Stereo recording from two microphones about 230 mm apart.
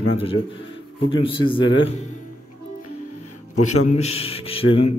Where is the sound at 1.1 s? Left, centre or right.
Left.